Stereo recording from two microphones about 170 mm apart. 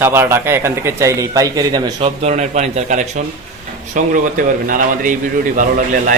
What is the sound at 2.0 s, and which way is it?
A man's voice, 40° right (ahead or behind).